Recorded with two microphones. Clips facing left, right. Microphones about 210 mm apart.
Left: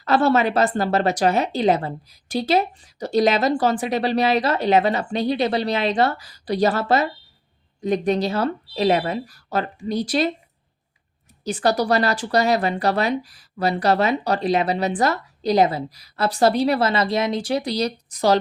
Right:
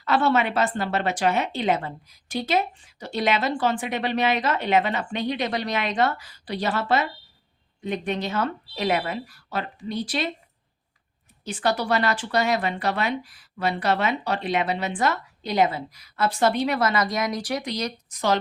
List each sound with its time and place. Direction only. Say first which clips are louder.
0.0 s speech: left 4 dB; 40° left (ahead or behind)
11.4 s speech: left 5 dB; 40° left (ahead or behind)